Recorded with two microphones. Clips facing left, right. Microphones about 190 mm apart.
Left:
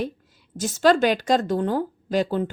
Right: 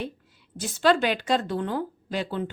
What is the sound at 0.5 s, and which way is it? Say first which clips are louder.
A woman's voice: left 3 dB; 40° left (ahead or behind).